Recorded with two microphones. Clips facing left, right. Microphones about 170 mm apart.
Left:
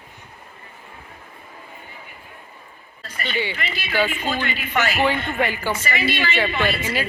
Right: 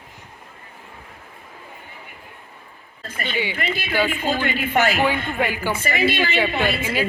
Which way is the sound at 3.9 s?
15° right (ahead or behind).